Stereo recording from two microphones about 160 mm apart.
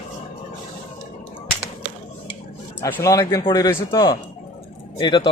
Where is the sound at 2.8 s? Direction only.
20° left (ahead or behind).